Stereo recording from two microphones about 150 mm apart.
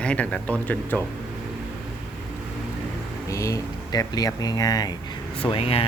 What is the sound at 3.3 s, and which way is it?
Speech, 20° left (ahead or behind).